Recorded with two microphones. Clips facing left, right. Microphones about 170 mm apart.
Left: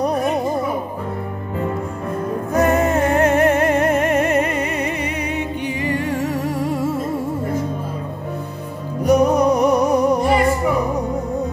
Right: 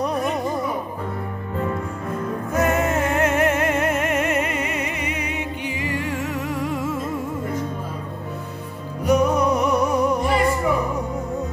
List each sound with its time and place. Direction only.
2.5 s music: 35° left (ahead or behind)
9.0 s music: 40° left (ahead or behind)